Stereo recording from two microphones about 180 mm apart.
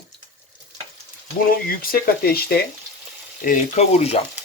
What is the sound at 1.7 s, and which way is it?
Speech, 55° left (ahead or behind).